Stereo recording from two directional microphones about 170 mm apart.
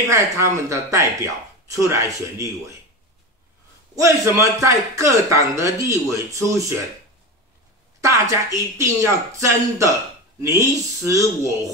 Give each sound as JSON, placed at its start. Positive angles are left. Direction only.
{"t": 0.1, "sound": "a man's voice", "side_deg": -20}
{"t": 3.9, "sound": "a man's voice", "side_deg": -20}
{"t": 8.0, "sound": "a man's voice", "side_deg": -20}